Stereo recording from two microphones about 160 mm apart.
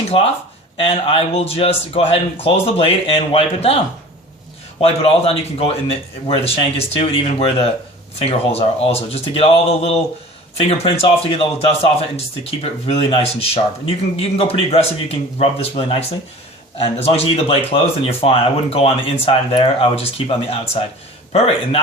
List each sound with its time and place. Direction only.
0.8 s speech: 35° left (ahead or behind)
4.8 s speech: 40° left (ahead or behind)